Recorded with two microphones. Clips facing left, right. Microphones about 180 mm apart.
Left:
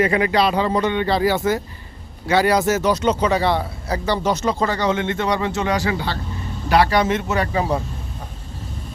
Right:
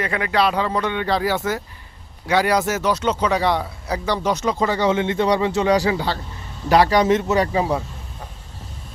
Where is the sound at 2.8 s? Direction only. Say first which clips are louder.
Left 2 dB; 10° left (ahead or behind).